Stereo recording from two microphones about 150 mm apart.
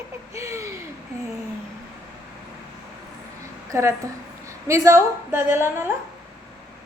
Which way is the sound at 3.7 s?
20° right (ahead or behind).